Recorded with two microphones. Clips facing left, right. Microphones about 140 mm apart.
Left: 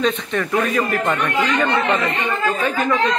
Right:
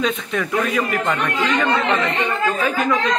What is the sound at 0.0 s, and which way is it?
Speech, centre (ahead or behind).